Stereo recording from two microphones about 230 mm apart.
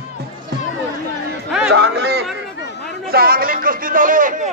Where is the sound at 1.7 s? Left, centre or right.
Right.